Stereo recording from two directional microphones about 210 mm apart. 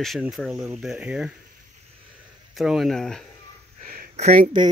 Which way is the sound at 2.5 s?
Centre (ahead or behind).